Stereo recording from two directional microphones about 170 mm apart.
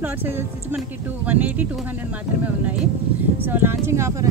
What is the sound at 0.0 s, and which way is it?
Speech, 10° right (ahead or behind).